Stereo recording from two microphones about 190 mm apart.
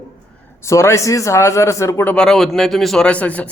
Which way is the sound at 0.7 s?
15° left (ahead or behind).